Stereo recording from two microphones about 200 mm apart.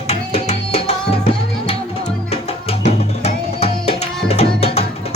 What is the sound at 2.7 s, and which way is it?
Music, 30° left (ahead or behind).